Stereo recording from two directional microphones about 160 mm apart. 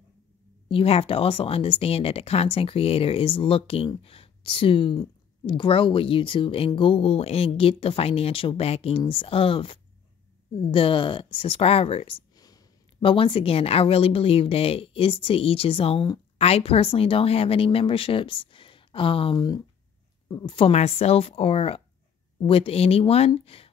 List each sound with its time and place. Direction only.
0.7 s speech: 35° left (ahead or behind)
12.4 s speech: 25° left (ahead or behind)